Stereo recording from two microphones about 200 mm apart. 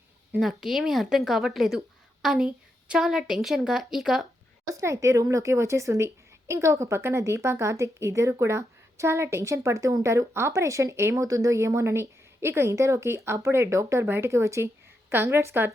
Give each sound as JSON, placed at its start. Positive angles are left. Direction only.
{"t": 0.3, "sound": "a woman's voice", "side_deg": 0}
{"t": 4.6, "sound": "a woman's voice", "side_deg": -15}